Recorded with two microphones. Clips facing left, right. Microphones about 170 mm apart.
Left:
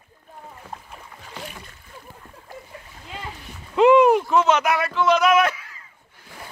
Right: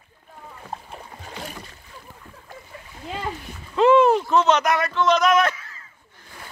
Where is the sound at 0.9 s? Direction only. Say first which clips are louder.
Right 2 dB; 35° right (ahead or behind).